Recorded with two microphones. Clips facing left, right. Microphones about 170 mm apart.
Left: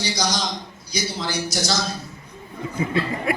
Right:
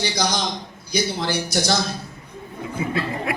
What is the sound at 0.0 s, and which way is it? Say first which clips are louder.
A man's voice: right 2 dB; 55° right (ahead or behind).